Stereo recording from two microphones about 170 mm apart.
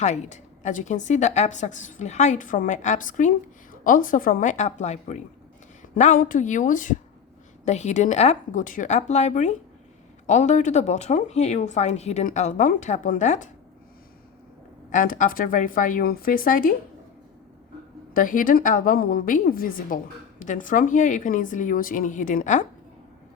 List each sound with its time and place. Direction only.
0.0 s a woman's voice: 45° left (ahead or behind)
14.8 s speech: 50° left (ahead or behind)
18.1 s a woman's voice: 55° left (ahead or behind)